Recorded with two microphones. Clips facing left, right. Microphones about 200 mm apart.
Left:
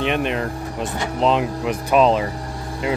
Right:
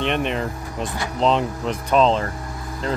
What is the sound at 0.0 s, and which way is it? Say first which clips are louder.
Speech: left 1 dB; 5° left (ahead or behind).